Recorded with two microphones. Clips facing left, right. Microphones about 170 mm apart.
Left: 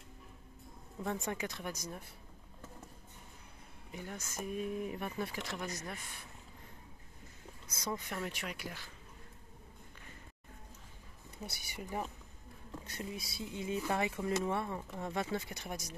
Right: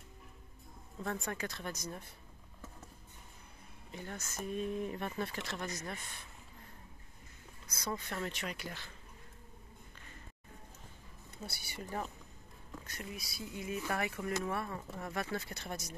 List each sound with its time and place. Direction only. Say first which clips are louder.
1.0 s speech: left 1 dB; 20° left (ahead or behind)
3.9 s speech: even; 10° left (ahead or behind)
7.7 s speech: even; 15° left (ahead or behind)
11.4 s speech: even; 15° left (ahead or behind)
12.8 s speech: left 3 dB; 25° left (ahead or behind)